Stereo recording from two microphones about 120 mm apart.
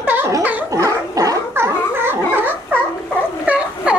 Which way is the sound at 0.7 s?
30° right (ahead or behind).